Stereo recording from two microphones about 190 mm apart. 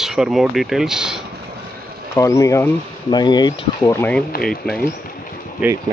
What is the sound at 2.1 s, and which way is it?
Speech, 15° left (ahead or behind).